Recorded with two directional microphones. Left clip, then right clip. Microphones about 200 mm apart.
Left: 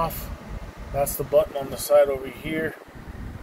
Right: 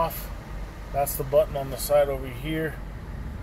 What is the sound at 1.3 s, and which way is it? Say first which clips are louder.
Speech: left 1 dB; 15° left (ahead or behind).